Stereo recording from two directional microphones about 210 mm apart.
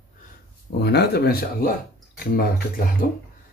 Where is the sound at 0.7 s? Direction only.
50° left (ahead or behind).